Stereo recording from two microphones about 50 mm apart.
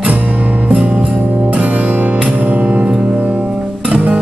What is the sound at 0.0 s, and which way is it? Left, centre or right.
Music, right.